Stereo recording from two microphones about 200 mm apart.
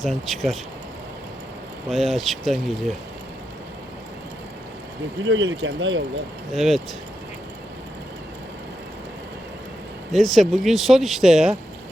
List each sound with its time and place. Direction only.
0.0 s speech: centre (ahead or behind)
1.9 s speech: centre (ahead or behind)
5.2 s speech: 70° right (ahead or behind)
6.5 s speech: centre (ahead or behind)
10.1 s speech: centre (ahead or behind)